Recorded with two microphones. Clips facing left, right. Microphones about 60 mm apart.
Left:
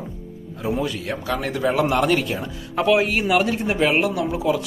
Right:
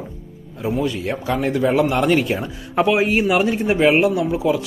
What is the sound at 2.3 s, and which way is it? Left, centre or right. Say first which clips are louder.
Speech: right 4 dB; centre.